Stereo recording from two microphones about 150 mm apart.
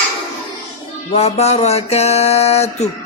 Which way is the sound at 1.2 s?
45° left (ahead or behind).